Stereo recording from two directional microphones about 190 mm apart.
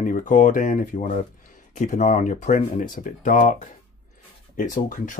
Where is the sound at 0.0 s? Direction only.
45° left (ahead or behind).